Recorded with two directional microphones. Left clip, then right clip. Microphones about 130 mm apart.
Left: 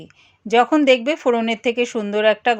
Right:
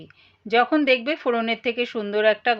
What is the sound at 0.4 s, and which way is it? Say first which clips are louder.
A woman's voice: left 4 dB; 35° left (ahead or behind).